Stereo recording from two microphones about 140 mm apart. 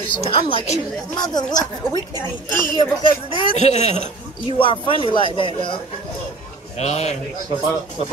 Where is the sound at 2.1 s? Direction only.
30° right (ahead or behind).